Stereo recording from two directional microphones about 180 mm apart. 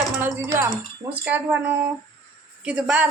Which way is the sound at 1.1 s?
5° right (ahead or behind).